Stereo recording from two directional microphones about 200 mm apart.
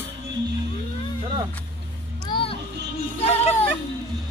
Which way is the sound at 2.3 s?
25° left (ahead or behind).